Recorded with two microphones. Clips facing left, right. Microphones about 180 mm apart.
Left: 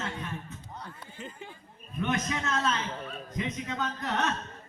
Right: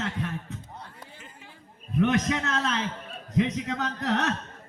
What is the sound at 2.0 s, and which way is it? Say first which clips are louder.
A man's voice: right 6 dB; 75° right (ahead or behind).